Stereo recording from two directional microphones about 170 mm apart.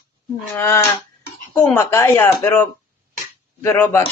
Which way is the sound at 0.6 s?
15° left (ahead or behind).